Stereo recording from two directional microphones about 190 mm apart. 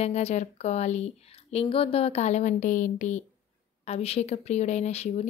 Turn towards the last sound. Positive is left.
turn(degrees=35)  # may be behind; listen again after turning